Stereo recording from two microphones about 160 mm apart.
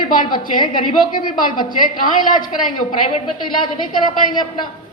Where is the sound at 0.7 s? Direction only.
60° left (ahead or behind).